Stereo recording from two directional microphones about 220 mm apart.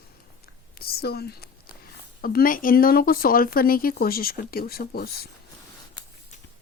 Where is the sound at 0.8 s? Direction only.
45° left (ahead or behind).